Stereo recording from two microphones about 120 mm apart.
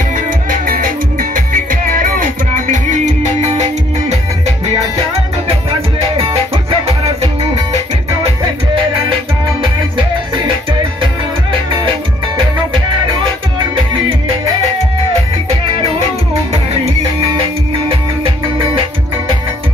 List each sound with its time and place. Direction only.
2.6 s music: 90° right; by 4.2 s 65° right (ahead or behind)
6.0 s music: 55° right (ahead or behind)